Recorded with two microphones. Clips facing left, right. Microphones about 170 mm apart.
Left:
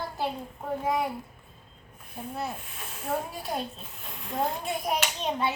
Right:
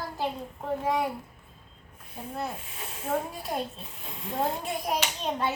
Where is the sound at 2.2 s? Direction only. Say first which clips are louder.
Even; 5° left (ahead or behind).